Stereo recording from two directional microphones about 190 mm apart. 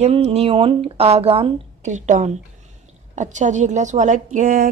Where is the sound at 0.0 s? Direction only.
35° right (ahead or behind).